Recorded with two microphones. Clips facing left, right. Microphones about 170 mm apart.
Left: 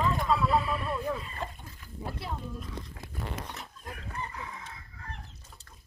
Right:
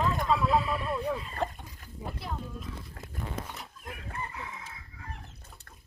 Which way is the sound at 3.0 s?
50° right (ahead or behind).